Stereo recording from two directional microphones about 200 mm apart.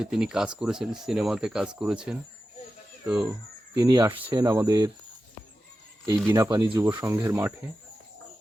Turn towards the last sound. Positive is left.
turn(degrees=-15)  # may be behind; listen again after turning